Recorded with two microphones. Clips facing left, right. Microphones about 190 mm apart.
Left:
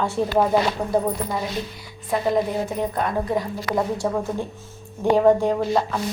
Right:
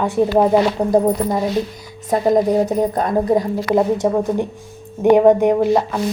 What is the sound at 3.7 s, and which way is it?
A woman's voice, 20° right (ahead or behind).